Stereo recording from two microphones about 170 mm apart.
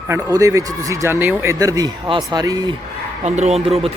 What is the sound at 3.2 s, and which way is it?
Speech, 40° right (ahead or behind).